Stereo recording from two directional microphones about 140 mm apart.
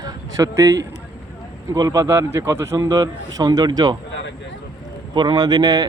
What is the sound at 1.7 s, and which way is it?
A man's voice, 25° right (ahead or behind).